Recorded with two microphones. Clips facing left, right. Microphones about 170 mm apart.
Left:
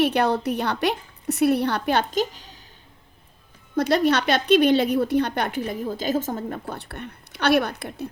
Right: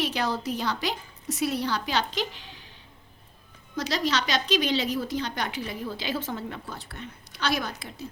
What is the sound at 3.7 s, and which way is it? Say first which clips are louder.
A woman's voice: left 8 dB; 55° left (ahead or behind).